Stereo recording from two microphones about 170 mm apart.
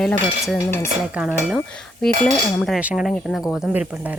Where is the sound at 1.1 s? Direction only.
5° right (ahead or behind).